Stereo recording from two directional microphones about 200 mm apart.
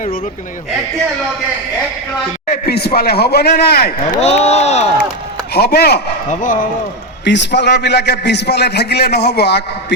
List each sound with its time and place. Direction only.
2.5 s a man's voice: 55° left (ahead or behind)
4.0 s speech: 30° left (ahead or behind)
5.5 s a man's voice: 55° left (ahead or behind)
7.3 s a man's voice: 60° left (ahead or behind)